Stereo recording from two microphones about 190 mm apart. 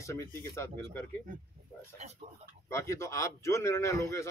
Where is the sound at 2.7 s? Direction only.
15° left (ahead or behind).